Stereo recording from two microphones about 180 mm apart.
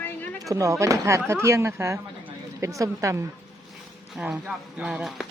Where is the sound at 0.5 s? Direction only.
15° right (ahead or behind).